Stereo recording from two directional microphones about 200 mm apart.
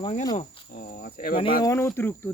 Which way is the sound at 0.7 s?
45° left (ahead or behind).